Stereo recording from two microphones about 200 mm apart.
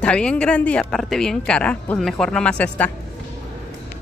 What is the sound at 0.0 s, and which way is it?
A woman's voice, 5° left (ahead or behind).